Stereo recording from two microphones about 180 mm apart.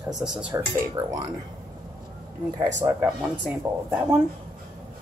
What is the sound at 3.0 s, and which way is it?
Speech, 5° right (ahead or behind).